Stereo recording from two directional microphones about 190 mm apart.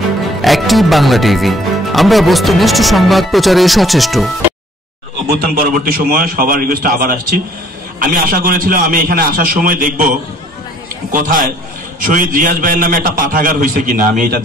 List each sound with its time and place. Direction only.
0.4 s speech: centre (ahead or behind)
5.4 s a man's voice: 50° right (ahead or behind)
11.1 s a man's voice: 45° right (ahead or behind)